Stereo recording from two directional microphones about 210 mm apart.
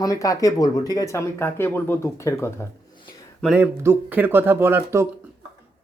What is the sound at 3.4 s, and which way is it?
Speech, 5° right (ahead or behind).